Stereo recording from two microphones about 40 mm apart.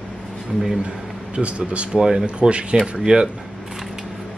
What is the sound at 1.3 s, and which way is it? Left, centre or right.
Speech, right.